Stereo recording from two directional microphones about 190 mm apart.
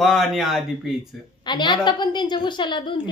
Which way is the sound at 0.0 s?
Centre (ahead or behind).